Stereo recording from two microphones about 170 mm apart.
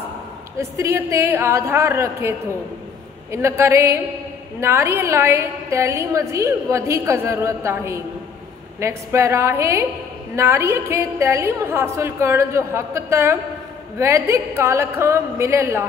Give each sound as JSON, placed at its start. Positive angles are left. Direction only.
{"t": 0.6, "sound": "a woman's voice", "side_deg": -15}